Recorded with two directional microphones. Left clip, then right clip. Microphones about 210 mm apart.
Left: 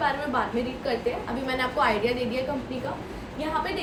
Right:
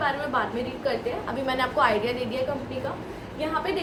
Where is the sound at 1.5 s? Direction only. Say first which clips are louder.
Right 2 dB; 10° right (ahead or behind).